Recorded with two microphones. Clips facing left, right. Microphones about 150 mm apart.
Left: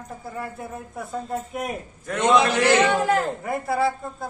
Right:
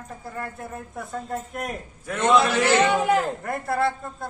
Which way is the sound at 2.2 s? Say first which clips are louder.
Left 1 dB; 15° left (ahead or behind).